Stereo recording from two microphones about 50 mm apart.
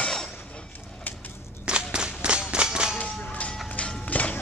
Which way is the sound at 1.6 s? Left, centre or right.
Centre.